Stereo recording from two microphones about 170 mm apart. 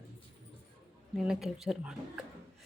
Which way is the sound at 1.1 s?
5° right (ahead or behind).